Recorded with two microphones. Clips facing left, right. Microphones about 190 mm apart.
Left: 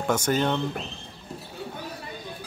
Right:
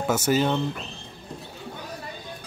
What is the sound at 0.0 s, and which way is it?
Speech, 5° right (ahead or behind).